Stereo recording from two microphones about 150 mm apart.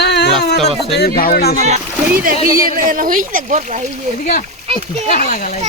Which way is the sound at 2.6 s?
65° right (ahead or behind).